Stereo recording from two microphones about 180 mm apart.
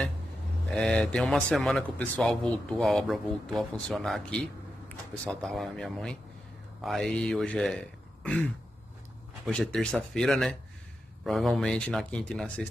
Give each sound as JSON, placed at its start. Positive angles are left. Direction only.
{"t": 0.7, "sound": "speech", "side_deg": 5}
{"t": 9.5, "sound": "speech", "side_deg": 5}